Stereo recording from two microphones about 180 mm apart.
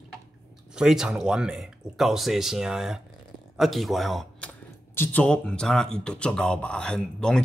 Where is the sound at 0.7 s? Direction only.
5° right (ahead or behind).